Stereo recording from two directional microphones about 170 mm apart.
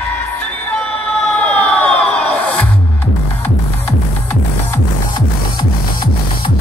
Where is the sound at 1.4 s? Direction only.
10° left (ahead or behind).